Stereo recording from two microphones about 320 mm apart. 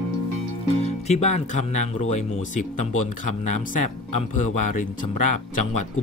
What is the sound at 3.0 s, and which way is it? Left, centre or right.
Speech, left.